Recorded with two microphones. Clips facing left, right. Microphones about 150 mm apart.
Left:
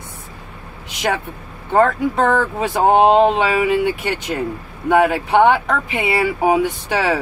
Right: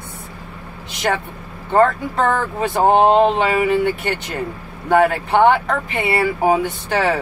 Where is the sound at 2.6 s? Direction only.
10° left (ahead or behind).